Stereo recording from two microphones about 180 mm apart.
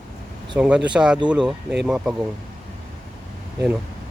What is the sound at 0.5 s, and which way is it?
Mantra, 5° right (ahead or behind).